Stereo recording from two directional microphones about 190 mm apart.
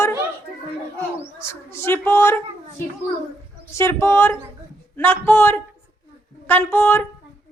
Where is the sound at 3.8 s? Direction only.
15° left (ahead or behind).